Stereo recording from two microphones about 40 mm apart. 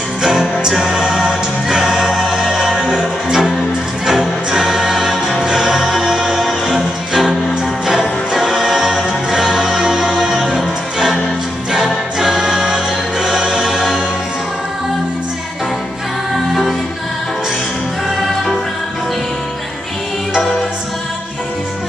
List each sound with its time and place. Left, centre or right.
0.2 s music: centre
1.2 s choir: centre
4.0 s music: centre
5.4 s music: centre
8.3 s music: centre
11.7 s choir: centre
13.5 s music: centre